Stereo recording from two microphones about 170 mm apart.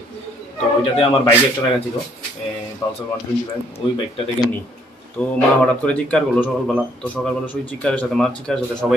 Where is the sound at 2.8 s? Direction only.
20° left (ahead or behind).